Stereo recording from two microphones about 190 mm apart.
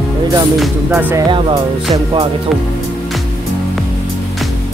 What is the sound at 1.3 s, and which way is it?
Speech, 25° right (ahead or behind).